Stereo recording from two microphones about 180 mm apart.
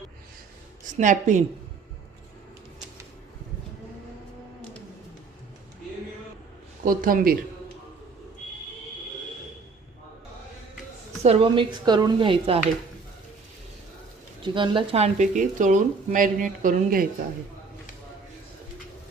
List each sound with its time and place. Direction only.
0.9 s speech: 45° right (ahead or behind)
6.8 s speech: 50° right (ahead or behind)
11.2 s a woman's voice: 35° right (ahead or behind)
14.4 s speech: 25° right (ahead or behind); by 17.1 s 50° right (ahead or behind)